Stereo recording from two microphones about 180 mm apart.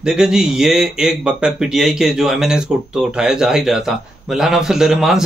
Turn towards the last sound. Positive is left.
turn(degrees=-5)  # may be behind; listen again after turning